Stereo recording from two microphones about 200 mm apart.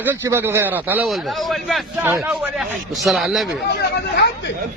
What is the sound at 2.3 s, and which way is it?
A man's voice, centre (ahead or behind).